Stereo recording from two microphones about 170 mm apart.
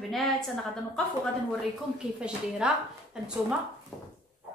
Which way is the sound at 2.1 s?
5° right (ahead or behind).